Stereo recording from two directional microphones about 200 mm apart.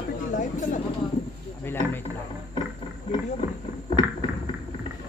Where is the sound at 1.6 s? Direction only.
10° left (ahead or behind).